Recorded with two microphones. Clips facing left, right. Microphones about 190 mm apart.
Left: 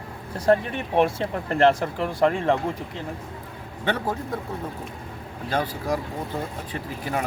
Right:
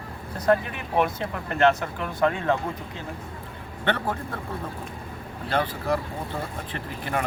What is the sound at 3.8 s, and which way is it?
Speech, 10° left (ahead or behind).